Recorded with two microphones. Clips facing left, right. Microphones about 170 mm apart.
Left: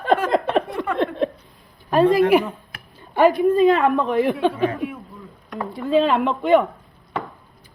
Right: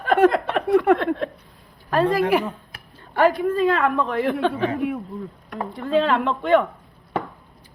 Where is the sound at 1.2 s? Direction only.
20° left (ahead or behind).